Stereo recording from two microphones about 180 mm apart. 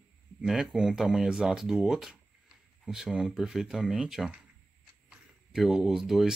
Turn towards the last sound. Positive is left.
turn(degrees=0)  # may be behind; listen again after turning